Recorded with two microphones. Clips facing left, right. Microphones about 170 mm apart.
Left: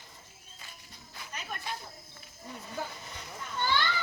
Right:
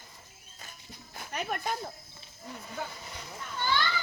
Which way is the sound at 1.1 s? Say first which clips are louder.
Right 7 dB; 55° right (ahead or behind).